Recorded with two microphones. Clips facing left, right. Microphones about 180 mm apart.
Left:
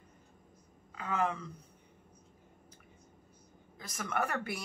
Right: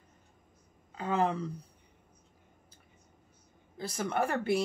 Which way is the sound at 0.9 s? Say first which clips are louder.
Right 4 dB; 30° right (ahead or behind).